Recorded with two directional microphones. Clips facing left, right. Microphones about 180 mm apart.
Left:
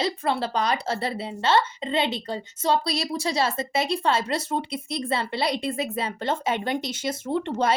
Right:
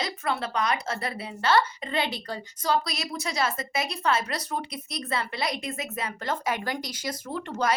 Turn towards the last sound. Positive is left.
turn(degrees=25)  # may be behind; listen again after turning